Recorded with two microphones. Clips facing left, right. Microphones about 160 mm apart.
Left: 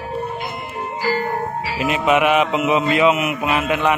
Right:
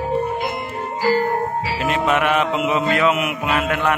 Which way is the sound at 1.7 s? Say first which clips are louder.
Left 3 dB; 10° left (ahead or behind).